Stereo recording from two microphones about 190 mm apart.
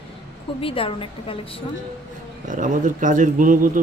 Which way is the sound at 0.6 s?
30° left (ahead or behind).